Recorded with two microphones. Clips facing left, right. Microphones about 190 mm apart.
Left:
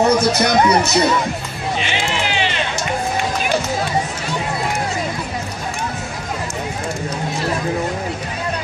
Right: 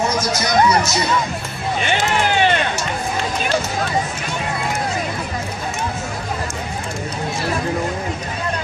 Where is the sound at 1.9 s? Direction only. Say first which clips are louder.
Right 3 dB; 50° right (ahead or behind).